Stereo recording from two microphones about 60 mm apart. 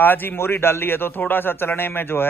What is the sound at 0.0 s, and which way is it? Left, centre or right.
A man's voice, left.